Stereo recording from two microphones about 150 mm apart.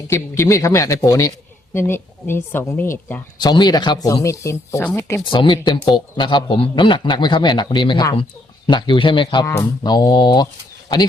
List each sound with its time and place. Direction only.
0.1 s speech: 20° left (ahead or behind)
3.5 s speech: 30° left (ahead or behind)
5.2 s a man's voice: 35° left (ahead or behind)